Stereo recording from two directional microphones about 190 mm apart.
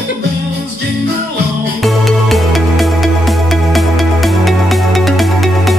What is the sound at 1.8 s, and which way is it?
Music, centre (ahead or behind).